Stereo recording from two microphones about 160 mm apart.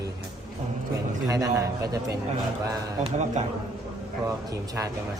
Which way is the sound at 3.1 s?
45° right (ahead or behind).